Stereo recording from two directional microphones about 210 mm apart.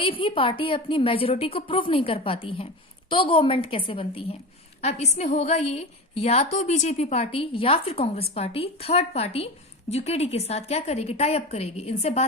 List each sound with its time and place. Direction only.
0.0 s a woman's voice: 25° left (ahead or behind)